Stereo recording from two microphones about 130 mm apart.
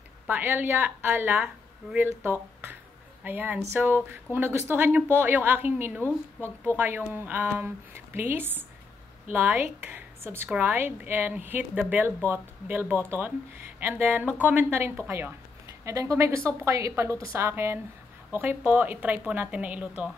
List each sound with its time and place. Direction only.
0.3 s a woman's voice: 15° right (ahead or behind)
2.2 s a sound: 15° right (ahead or behind)
3.3 s a woman's voice: 15° right (ahead or behind)